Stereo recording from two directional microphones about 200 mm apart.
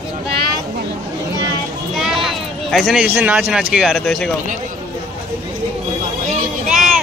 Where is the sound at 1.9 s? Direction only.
Centre (ahead or behind).